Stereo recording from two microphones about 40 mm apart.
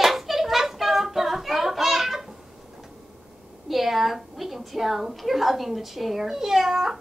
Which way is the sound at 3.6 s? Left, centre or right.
Centre.